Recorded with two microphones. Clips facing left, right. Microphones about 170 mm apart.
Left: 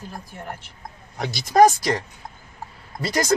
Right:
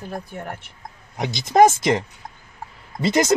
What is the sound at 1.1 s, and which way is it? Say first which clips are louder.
Speech: right 1 dB; 20° right (ahead or behind).